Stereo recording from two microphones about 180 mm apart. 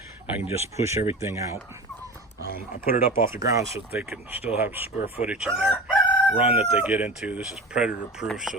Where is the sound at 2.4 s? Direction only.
60° left (ahead or behind).